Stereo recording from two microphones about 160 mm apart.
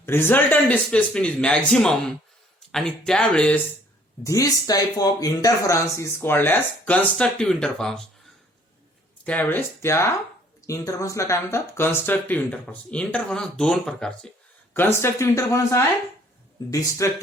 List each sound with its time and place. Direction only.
0.0 s speech: 15° left (ahead or behind)
4.2 s speech: 20° left (ahead or behind); by 8.0 s 5° left (ahead or behind)
9.2 s speech: 10° left (ahead or behind)